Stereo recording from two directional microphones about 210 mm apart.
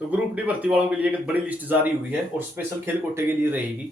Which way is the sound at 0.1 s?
5° right (ahead or behind).